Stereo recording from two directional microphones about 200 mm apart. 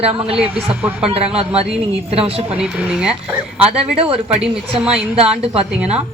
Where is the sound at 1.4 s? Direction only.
30° right (ahead or behind).